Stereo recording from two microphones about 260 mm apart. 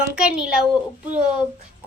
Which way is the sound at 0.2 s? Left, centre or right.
Centre.